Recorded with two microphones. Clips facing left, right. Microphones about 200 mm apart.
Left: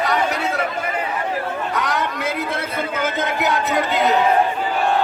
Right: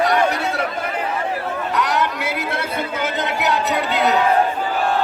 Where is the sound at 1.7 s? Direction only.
65° right (ahead or behind).